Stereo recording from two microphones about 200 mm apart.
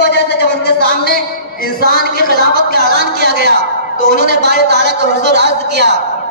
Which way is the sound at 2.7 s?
60° right (ahead or behind).